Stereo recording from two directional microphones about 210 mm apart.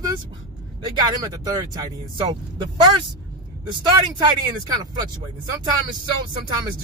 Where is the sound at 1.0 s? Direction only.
15° right (ahead or behind).